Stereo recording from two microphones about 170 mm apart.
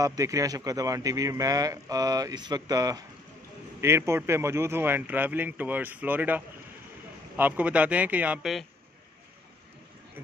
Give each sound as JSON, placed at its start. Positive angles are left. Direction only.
{"t": 0.0, "sound": "a man's voice", "side_deg": -20}